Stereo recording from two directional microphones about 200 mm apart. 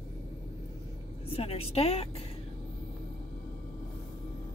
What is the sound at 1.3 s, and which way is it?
Speech, 30° left (ahead or behind).